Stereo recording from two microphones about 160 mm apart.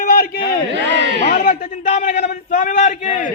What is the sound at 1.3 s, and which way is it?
A man's voice, 50° left (ahead or behind).